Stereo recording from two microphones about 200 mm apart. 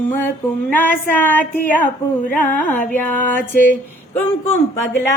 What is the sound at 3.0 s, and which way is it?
Speech, 10° left (ahead or behind).